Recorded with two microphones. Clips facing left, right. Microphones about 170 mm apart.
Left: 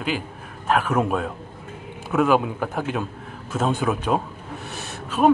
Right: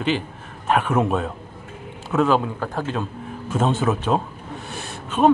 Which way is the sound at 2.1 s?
10° left (ahead or behind).